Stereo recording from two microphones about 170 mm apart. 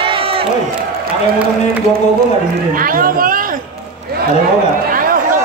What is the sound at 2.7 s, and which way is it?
Speech, 55° right (ahead or behind).